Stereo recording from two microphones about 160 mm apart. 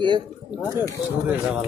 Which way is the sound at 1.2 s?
5° right (ahead or behind).